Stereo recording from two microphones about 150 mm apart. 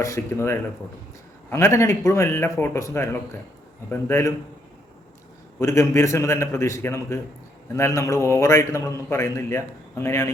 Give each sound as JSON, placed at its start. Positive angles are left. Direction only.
{"t": 0.0, "sound": "a man's voice", "side_deg": 20}
{"t": 5.5, "sound": "a man's voice", "side_deg": 20}